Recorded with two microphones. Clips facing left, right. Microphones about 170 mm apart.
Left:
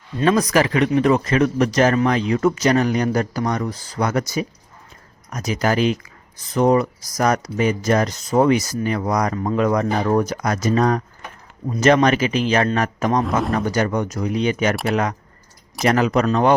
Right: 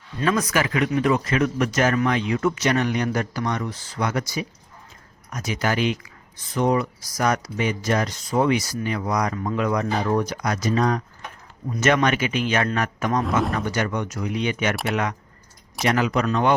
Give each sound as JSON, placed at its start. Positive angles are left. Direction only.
{"t": 0.2, "sound": "a man's voice", "side_deg": 35}
{"t": 11.7, "sound": "a man's voice", "side_deg": 30}
{"t": 15.8, "sound": "a man's voice", "side_deg": 40}